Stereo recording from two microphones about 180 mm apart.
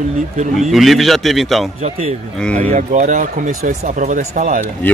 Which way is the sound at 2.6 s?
40° right (ahead or behind).